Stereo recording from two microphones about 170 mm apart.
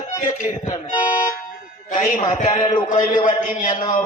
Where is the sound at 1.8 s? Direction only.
45° left (ahead or behind).